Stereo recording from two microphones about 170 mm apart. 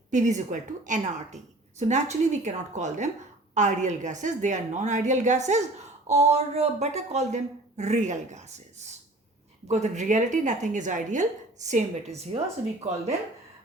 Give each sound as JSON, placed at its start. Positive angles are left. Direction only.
{"t": 0.1, "sound": "a woman's voice", "side_deg": -45}